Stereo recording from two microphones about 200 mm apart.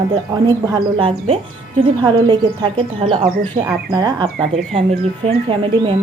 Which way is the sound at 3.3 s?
50° right (ahead or behind).